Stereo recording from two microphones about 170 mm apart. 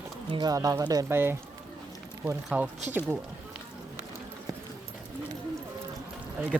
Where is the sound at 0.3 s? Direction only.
25° right (ahead or behind).